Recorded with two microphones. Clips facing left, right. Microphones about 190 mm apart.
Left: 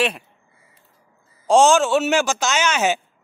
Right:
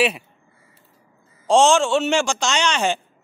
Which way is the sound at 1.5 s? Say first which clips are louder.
Left 1 dB; centre (ahead or behind).